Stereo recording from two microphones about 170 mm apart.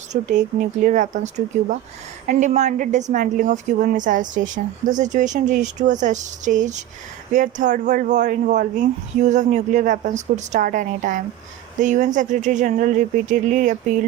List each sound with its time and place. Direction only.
0.1 s a woman's voice: 45° right (ahead or behind)